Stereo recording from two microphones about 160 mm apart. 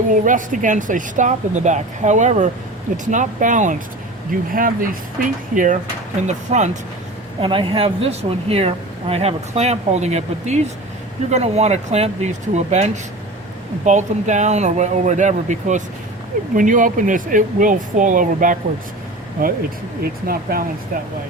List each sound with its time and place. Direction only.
0.1 s speech: 55° right (ahead or behind)
7.4 s speech: 30° right (ahead or behind); by 20.7 s 65° right (ahead or behind)